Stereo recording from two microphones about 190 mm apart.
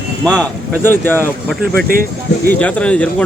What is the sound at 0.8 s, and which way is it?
Speech, 10° left (ahead or behind).